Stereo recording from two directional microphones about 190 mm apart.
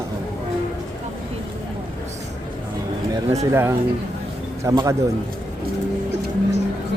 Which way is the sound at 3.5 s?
15° right (ahead or behind).